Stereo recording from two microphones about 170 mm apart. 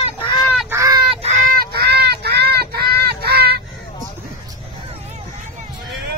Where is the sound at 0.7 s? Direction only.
20° right (ahead or behind).